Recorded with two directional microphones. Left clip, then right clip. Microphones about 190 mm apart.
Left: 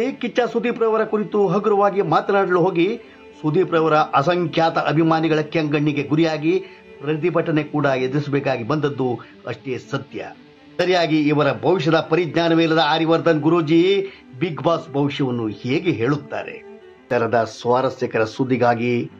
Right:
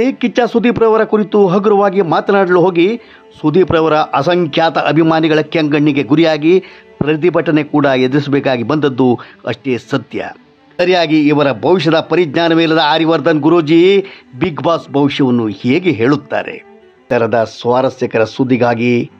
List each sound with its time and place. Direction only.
0.0 s a man's voice: 40° right (ahead or behind)
10.8 s a man's voice: 35° right (ahead or behind)
17.1 s a man's voice: 35° right (ahead or behind)